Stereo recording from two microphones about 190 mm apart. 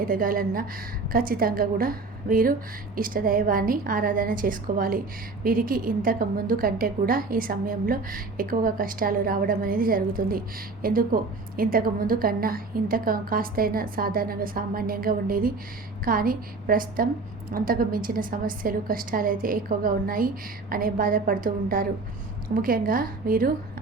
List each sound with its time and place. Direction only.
0.1 s a woman's voice: 50° right (ahead or behind)